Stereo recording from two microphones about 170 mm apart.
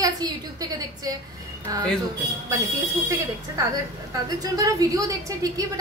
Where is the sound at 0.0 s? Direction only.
20° right (ahead or behind).